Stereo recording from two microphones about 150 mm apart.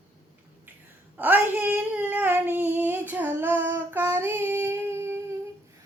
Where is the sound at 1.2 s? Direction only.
10° right (ahead or behind).